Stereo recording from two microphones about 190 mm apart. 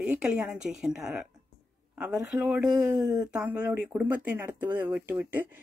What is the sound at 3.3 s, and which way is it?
Speech, 5° right (ahead or behind).